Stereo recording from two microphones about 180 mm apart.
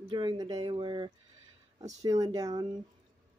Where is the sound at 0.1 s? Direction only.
25° right (ahead or behind).